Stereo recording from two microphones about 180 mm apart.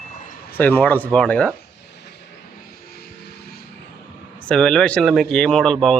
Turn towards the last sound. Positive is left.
turn(degrees=5)  # may be behind; listen again after turning